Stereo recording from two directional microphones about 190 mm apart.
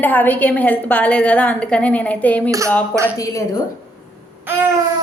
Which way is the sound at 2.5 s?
15° right (ahead or behind).